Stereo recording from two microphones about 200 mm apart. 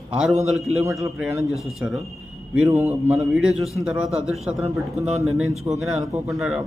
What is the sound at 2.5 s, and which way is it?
A man's voice, 5° right (ahead or behind).